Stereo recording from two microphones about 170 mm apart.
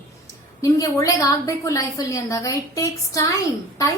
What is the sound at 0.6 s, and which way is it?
A woman's voice, 20° left (ahead or behind).